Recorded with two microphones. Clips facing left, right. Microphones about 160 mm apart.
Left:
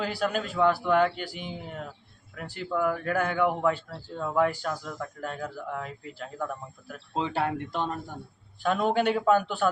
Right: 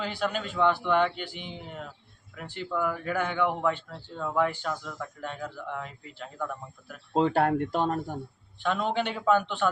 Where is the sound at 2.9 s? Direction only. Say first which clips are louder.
Left 2 dB; 45° left (ahead or behind).